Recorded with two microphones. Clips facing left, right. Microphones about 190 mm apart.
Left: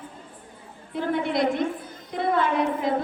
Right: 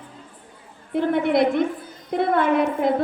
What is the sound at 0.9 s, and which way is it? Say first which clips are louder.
A woman's voice: right 6 dB; 55° right (ahead or behind).